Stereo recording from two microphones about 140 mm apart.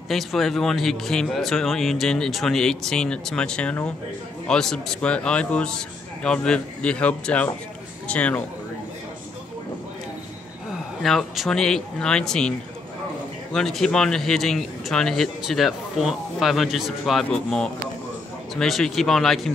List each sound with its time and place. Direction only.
0.1 s a man's voice: centre (ahead or behind)
11.0 s speech: centre (ahead or behind)